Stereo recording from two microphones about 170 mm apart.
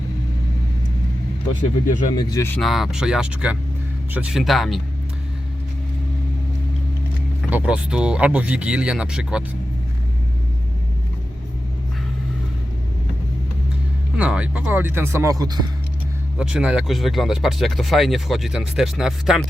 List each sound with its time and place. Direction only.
2.1 s speech: 20° left (ahead or behind)
2.6 s speech: centre (ahead or behind)
7.5 s speech: 5° right (ahead or behind)
14.2 s speech: 5° right (ahead or behind)
16.4 s speech: 5° right (ahead or behind)